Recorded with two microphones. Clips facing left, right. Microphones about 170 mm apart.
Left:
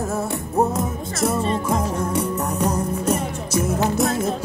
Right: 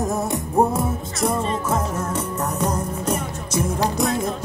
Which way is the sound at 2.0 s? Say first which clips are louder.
Left 2 dB; 10° left (ahead or behind).